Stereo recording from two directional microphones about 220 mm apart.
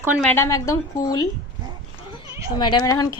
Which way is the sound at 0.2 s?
10° left (ahead or behind).